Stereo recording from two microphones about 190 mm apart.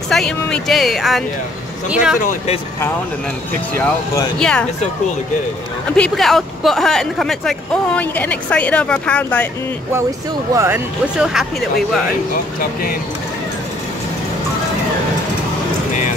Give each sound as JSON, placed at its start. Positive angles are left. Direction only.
{"t": 0.1, "sound": "speech", "side_deg": 0}
{"t": 2.1, "sound": "speech", "side_deg": 40}
{"t": 4.4, "sound": "speech", "side_deg": 5}
{"t": 5.9, "sound": "speech", "side_deg": 5}
{"t": 10.5, "sound": "speech", "side_deg": -15}
{"t": 11.1, "sound": "speech", "side_deg": -5}